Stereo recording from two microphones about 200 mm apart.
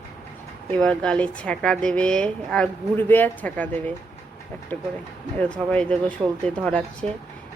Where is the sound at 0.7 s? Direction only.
5° left (ahead or behind).